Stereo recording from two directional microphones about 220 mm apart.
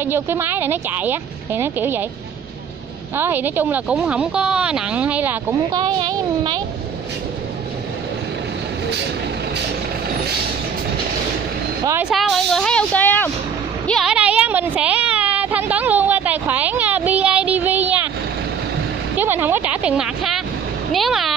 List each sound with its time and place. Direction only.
0.0 s speech: 10° right (ahead or behind)
3.2 s speech: 10° right (ahead or behind)
11.8 s speech: 10° right (ahead or behind)
12.1 s speech: centre (ahead or behind)
19.1 s speech: 10° right (ahead or behind)